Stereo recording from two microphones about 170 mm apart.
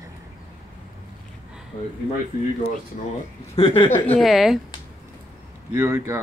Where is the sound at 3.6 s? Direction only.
30° left (ahead or behind).